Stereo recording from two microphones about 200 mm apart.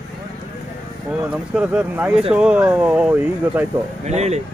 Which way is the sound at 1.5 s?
5° right (ahead or behind).